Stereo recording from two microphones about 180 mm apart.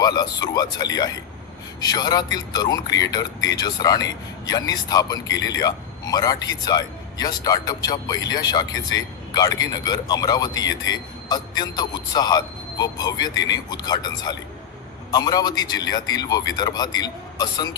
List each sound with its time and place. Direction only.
0.0 s a man's voice: 20° left (ahead or behind)